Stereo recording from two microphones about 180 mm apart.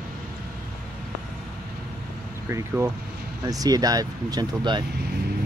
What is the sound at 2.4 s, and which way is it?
Speech, 15° right (ahead or behind).